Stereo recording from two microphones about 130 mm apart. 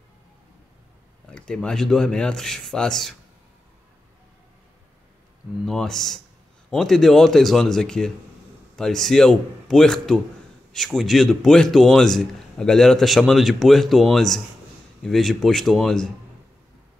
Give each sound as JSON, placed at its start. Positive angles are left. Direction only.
{"t": 1.3, "sound": "a man's voice", "side_deg": 5}
{"t": 5.7, "sound": "a man's voice", "side_deg": 5}